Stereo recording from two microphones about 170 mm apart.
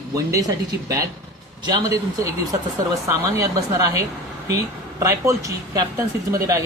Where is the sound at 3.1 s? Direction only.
20° right (ahead or behind).